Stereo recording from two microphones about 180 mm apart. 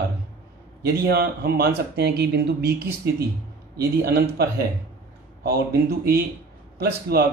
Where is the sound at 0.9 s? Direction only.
60° right (ahead or behind).